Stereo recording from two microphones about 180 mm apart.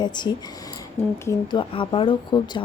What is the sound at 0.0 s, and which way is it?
Speech, 25° left (ahead or behind).